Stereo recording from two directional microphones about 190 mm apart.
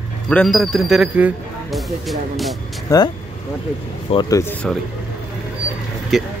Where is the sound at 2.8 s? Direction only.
20° left (ahead or behind).